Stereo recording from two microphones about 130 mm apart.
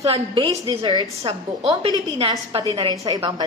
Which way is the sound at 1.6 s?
50° right (ahead or behind).